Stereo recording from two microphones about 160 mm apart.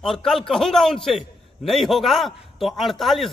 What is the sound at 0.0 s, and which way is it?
A man's voice, centre (ahead or behind).